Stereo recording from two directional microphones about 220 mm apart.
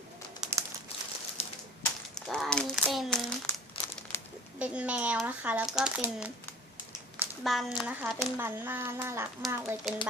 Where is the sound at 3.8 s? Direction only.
25° left (ahead or behind).